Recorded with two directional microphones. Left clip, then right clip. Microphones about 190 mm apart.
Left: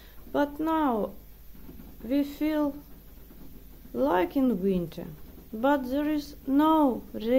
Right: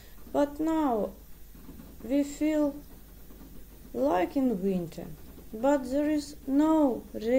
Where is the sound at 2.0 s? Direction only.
20° left (ahead or behind).